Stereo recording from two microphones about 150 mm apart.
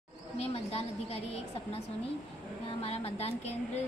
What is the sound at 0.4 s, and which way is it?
A woman's voice, 45° left (ahead or behind).